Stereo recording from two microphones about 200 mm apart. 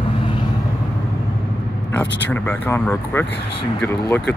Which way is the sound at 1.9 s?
10° left (ahead or behind).